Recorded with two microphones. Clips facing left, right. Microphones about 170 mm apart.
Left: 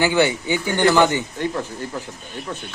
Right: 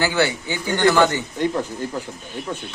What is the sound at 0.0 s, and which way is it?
Speech, 15° left (ahead or behind).